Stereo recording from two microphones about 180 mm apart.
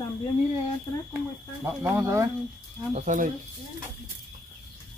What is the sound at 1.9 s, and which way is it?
Speech, 15° right (ahead or behind).